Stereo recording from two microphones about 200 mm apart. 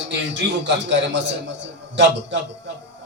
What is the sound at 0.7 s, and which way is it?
A man's voice, 60° right (ahead or behind).